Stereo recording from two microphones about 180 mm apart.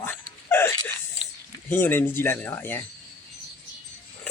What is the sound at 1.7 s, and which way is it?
Speech, 10° left (ahead or behind).